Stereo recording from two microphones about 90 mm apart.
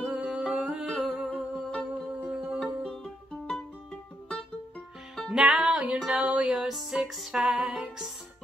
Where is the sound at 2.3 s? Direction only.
15° right (ahead or behind).